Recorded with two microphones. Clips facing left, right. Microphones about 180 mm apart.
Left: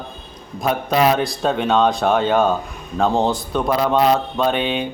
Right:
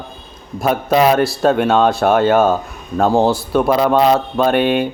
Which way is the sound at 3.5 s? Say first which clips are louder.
Right 5 dB; 5° right (ahead or behind).